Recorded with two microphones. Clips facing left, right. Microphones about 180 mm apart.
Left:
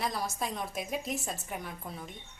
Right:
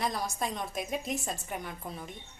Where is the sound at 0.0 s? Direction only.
5° left (ahead or behind).